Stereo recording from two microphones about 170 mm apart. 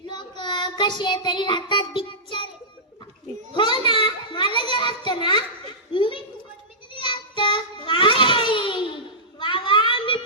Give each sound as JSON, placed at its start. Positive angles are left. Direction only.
{"t": 0.1, "sound": "child singing", "side_deg": 25}
{"t": 3.5, "sound": "children playing", "side_deg": 30}
{"t": 5.0, "sound": "a child's voice", "side_deg": 30}
{"t": 5.9, "sound": "a sound", "side_deg": 30}
{"t": 7.0, "sound": "child singing", "side_deg": 30}
{"t": 9.4, "sound": "children playing", "side_deg": 30}